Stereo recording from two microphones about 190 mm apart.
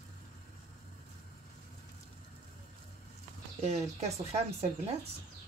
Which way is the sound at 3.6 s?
35° right (ahead or behind).